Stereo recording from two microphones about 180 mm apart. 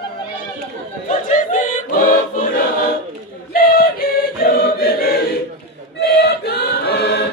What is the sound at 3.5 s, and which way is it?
Choir, 55° left (ahead or behind).